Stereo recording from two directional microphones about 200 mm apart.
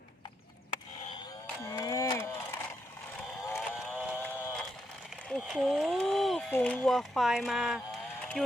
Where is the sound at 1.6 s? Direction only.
15° left (ahead or behind).